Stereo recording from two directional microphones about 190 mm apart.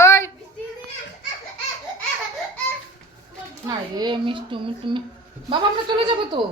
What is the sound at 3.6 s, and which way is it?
A woman's voice, 25° right (ahead or behind).